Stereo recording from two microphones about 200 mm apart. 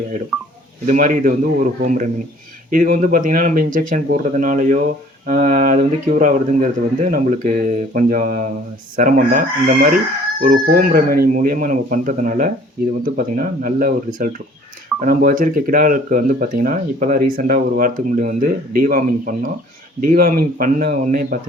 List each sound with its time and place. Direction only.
0.9 s speech: 40° right (ahead or behind)